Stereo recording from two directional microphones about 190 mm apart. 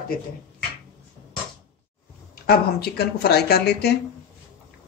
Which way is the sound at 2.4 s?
55° left (ahead or behind).